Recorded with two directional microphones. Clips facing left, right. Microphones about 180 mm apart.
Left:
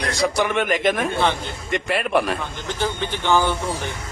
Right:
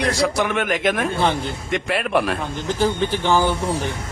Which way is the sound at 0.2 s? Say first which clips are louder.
Even; centre (ahead or behind).